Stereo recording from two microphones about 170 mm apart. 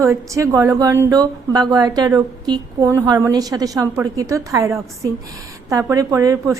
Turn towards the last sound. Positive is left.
turn(degrees=-20)  # may be behind; listen again after turning